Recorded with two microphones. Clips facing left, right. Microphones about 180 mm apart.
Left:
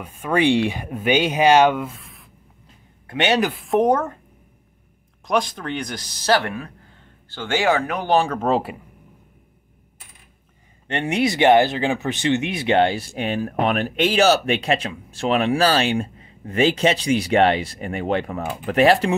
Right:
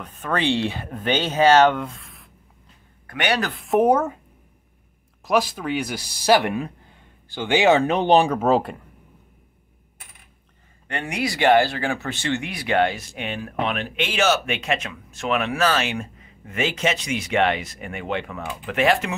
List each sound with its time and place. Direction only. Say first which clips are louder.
0.0 s speech: left 5 dB; 10° left (ahead or behind)
3.1 s speech: left 4 dB; 25° left (ahead or behind)
3.6 s speech: right 3 dB; 5° right (ahead or behind)
5.2 s speech: right 1 dB; 5° right (ahead or behind)
8.4 s speech: right 1 dB; centre (ahead or behind)
10.9 s speech: left 6 dB; 25° left (ahead or behind)
13.1 s speech: left 6 dB; 40° left (ahead or behind)